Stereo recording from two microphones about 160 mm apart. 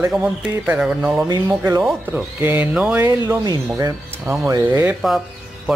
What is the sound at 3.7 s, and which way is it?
Speech, 15° right (ahead or behind).